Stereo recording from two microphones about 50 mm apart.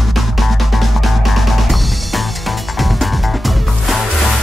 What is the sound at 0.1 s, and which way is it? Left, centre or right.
Drum kit, centre.